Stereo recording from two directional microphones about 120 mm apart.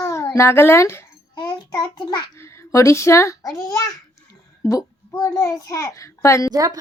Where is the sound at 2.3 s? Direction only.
20° left (ahead or behind).